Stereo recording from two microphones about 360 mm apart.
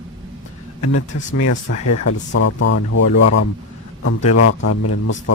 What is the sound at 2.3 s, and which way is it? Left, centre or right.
Speech, left.